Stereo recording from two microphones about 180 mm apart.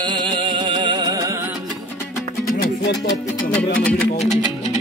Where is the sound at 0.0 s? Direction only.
25° right (ahead or behind).